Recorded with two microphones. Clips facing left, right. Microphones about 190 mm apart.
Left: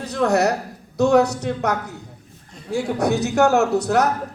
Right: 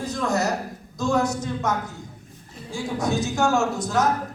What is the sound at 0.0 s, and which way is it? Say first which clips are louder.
A woman's voice: left 6 dB; 65° left (ahead or behind).